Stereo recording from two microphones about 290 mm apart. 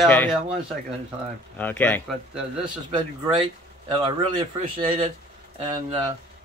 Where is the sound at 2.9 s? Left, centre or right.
Centre.